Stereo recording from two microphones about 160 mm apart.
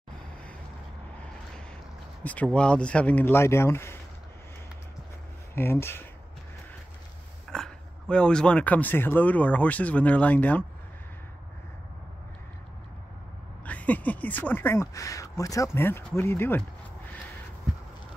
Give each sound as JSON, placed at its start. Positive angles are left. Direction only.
{"t": 2.2, "sound": "speech", "side_deg": 10}
{"t": 5.5, "sound": "speech", "side_deg": 15}
{"t": 7.5, "sound": "speech", "side_deg": 5}
{"t": 13.7, "sound": "speech", "side_deg": 10}